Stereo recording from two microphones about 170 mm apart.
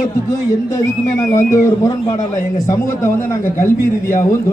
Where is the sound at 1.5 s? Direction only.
15° left (ahead or behind).